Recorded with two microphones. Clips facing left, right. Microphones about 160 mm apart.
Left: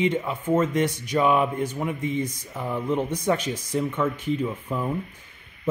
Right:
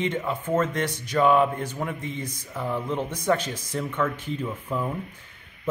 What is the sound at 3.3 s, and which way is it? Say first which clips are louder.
Speech: right 1 dB; 20° left (ahead or behind).